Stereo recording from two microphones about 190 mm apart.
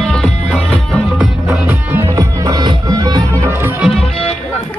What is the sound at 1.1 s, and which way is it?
Music, 5° right (ahead or behind).